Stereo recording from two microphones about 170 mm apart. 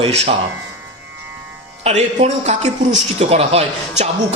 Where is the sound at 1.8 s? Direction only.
40° right (ahead or behind).